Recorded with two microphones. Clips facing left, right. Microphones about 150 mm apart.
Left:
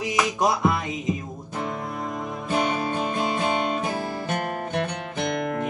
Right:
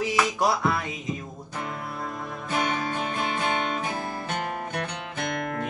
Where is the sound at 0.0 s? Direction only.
15° left (ahead or behind).